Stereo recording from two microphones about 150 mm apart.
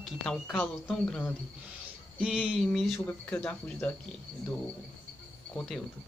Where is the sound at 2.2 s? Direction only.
5° right (ahead or behind).